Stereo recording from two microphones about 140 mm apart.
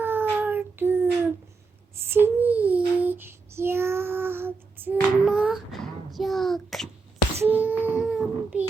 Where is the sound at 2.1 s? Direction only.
15° right (ahead or behind); by 6.8 s centre (ahead or behind).